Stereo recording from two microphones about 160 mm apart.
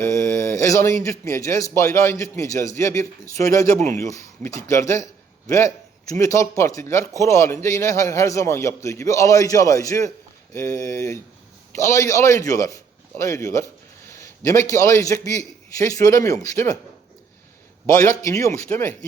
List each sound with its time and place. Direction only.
0.0 s a man's voice: 15° left (ahead or behind)
14.1 s a sound: 20° left (ahead or behind)
14.7 s a man's voice: 20° left (ahead or behind)
18.0 s a man's voice: 20° left (ahead or behind)